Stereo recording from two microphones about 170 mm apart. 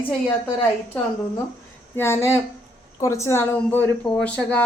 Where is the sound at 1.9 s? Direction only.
15° left (ahead or behind).